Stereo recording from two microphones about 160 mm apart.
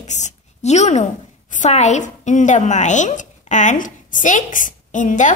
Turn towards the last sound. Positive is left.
turn(degrees=50)  # may be behind; listen again after turning